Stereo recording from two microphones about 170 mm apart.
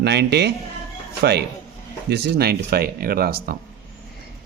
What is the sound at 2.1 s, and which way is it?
Speech, 75° right (ahead or behind).